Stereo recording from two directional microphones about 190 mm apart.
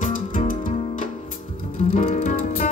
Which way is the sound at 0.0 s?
40° left (ahead or behind).